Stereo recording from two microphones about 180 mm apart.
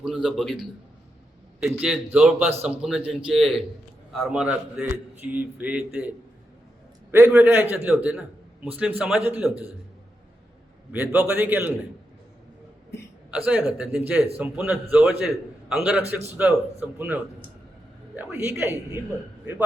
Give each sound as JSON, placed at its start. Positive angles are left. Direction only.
{"t": 0.0, "sound": "a man's voice", "side_deg": -5}
{"t": 1.8, "sound": "a man's voice", "side_deg": -5}
{"t": 10.9, "sound": "a man's voice", "side_deg": -5}
{"t": 13.3, "sound": "a man's voice", "side_deg": -5}
{"t": 18.2, "sound": "a man's voice", "side_deg": -15}